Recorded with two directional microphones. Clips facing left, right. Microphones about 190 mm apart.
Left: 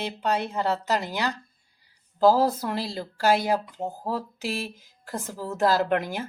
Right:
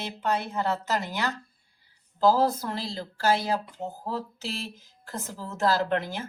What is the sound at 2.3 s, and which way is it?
A woman's voice, 15° left (ahead or behind).